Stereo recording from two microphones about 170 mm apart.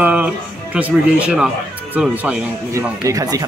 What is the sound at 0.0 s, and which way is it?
Music, 10° right (ahead or behind).